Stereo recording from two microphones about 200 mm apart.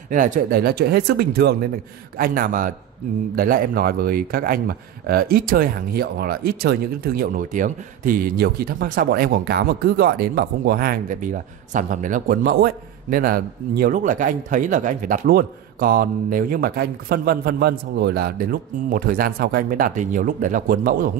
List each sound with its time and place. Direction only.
0.1 s speech: 40° right (ahead or behind)